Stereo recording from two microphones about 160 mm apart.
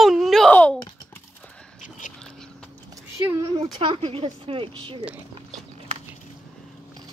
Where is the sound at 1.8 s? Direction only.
55° left (ahead or behind).